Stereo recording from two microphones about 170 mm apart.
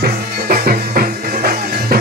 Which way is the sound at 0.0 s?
60° right (ahead or behind).